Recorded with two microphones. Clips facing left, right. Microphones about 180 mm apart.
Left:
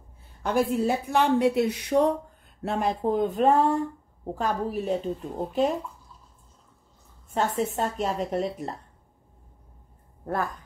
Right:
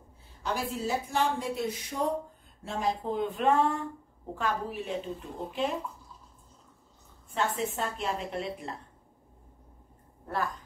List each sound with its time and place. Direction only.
0.4 s a woman's voice: 55° left (ahead or behind)
7.2 s a woman's voice: 45° left (ahead or behind)
10.2 s speech: 45° left (ahead or behind)